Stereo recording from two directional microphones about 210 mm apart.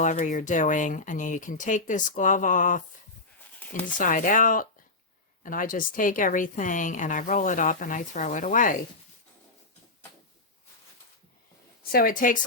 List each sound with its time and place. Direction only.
0.0 s a woman's voice: 35° left (ahead or behind)
3.9 s a woman's voice: 40° left (ahead or behind)
11.8 s a woman's voice: 45° left (ahead or behind)